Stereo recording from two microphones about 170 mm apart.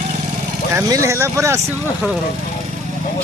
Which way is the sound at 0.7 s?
15° right (ahead or behind).